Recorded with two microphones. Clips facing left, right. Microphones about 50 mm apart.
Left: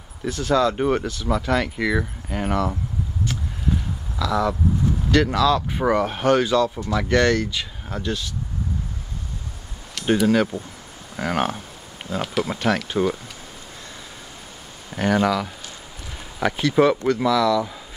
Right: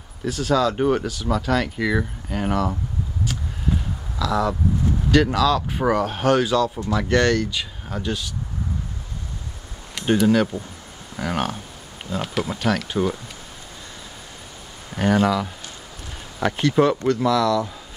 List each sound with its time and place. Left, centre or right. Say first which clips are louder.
0.3 s speech: even; centre
4.3 s speech: even; centre
7.1 s speech: left 1 dB; centre
10.0 s speech: even; centre
11.1 s speech: left 2 dB; centre
12.4 s speech: left 1 dB; centre
15.0 s speech: right 1 dB; centre
15.2 s speech: even; centre